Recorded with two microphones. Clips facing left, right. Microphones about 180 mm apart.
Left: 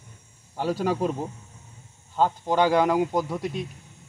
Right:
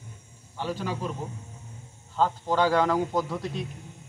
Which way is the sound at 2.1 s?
15° left (ahead or behind).